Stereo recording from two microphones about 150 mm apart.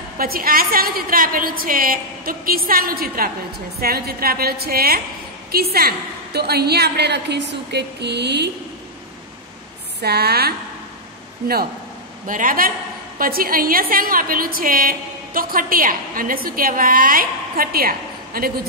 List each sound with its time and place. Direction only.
0.2 s a woman's voice: 75° right (ahead or behind)
3.8 s a woman's voice: 85° right
10.0 s a woman's voice: 90° right
12.3 s a woman's voice: 65° right (ahead or behind)